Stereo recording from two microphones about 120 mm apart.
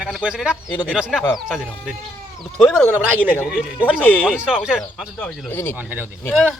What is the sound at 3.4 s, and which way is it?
Speech, 10° right (ahead or behind).